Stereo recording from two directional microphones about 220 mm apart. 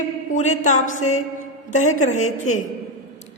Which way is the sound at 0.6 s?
35° left (ahead or behind).